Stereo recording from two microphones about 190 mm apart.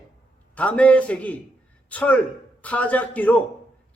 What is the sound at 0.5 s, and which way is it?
A man's voice, 5° left (ahead or behind).